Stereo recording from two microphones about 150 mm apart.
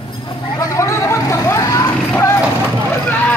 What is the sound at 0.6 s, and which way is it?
Vehicle, 20° left (ahead or behind).